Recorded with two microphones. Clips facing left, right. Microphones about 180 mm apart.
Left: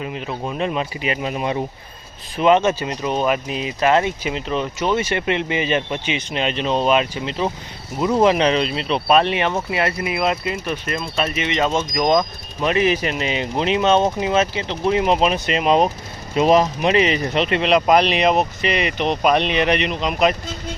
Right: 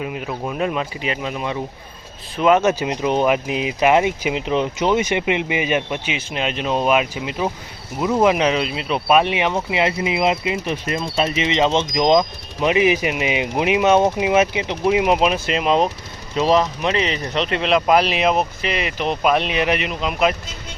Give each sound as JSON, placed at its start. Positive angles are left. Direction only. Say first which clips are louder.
{"t": 0.0, "sound": "speech", "louder": "right 1 dB", "side_deg": -5}
{"t": 2.4, "sound": "speech", "louder": "even", "side_deg": -5}